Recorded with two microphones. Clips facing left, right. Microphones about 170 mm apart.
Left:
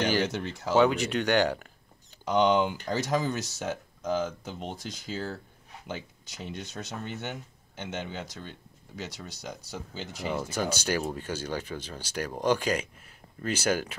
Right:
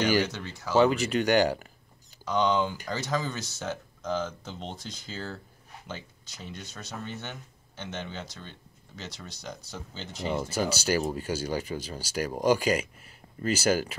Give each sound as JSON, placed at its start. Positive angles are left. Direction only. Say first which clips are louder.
{"t": 0.7, "sound": "speech", "louder": "right 1 dB", "side_deg": -5}
{"t": 2.2, "sound": "speech", "louder": "left 2 dB", "side_deg": 20}
{"t": 10.4, "sound": "speech", "louder": "right 2 dB", "side_deg": -5}